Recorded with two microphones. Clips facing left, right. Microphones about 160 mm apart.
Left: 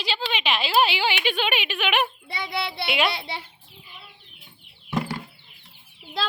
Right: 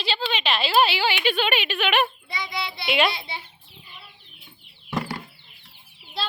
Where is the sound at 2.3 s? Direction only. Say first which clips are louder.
Left 2 dB; 60° left (ahead or behind).